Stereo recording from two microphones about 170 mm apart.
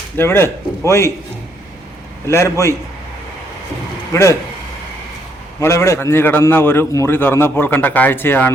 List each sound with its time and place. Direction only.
0.2 s a man's voice: 15° left (ahead or behind)
2.3 s a man's voice: 15° left (ahead or behind)
4.1 s a man's voice: 15° left (ahead or behind)
5.5 s a man's voice: 20° left (ahead or behind)